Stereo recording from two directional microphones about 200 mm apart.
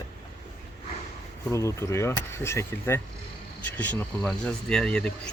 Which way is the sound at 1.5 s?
15° left (ahead or behind).